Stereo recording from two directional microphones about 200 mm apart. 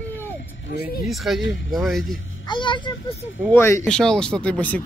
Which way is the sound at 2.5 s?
25° left (ahead or behind).